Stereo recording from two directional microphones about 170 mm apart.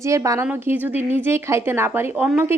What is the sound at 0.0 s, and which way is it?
A woman's voice, 15° right (ahead or behind).